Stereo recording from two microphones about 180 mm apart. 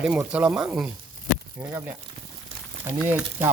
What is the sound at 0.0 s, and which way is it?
Speech, 5° right (ahead or behind).